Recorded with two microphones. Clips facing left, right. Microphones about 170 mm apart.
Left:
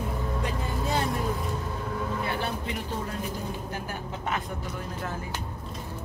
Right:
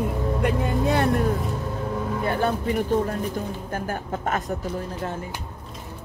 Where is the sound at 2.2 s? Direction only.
50° right (ahead or behind).